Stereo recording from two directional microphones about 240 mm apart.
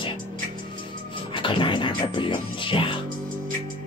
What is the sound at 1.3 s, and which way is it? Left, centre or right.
Speech, left.